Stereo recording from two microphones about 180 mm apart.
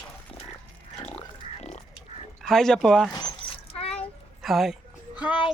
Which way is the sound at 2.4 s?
Centre (ahead or behind).